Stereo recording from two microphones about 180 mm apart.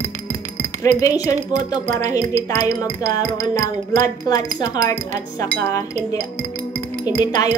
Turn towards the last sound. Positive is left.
turn(degrees=20)  # may be behind; listen again after turning